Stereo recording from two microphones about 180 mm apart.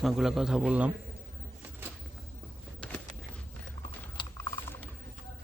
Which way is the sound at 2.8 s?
5° left (ahead or behind).